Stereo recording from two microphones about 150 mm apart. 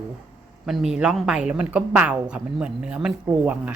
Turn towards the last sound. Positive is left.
turn(degrees=-10)  # may be behind; listen again after turning